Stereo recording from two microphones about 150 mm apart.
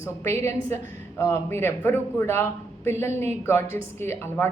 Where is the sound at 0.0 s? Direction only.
15° left (ahead or behind).